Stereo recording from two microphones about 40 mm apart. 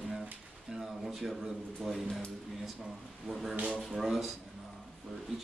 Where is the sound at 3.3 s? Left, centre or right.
Centre.